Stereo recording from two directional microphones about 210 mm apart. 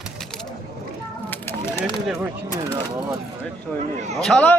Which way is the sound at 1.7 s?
5° right (ahead or behind).